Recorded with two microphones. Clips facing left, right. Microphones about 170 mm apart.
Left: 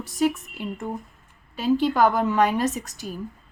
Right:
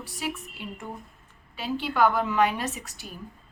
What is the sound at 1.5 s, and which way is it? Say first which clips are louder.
A woman's voice: left 7 dB; 45° left (ahead or behind).